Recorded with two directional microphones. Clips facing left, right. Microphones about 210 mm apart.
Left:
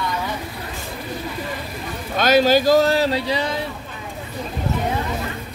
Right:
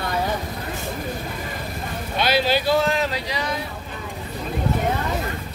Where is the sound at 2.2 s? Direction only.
45° left (ahead or behind).